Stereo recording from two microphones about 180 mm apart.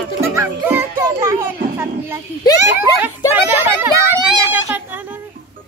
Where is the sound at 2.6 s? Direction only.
10° right (ahead or behind).